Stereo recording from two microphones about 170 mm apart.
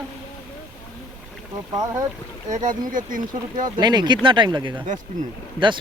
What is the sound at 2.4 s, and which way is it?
Speech, 45° right (ahead or behind).